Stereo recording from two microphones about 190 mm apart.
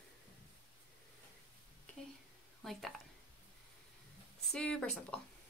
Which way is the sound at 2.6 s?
Centre (ahead or behind).